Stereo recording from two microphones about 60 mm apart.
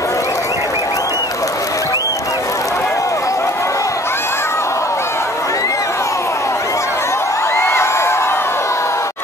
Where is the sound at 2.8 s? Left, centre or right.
Left.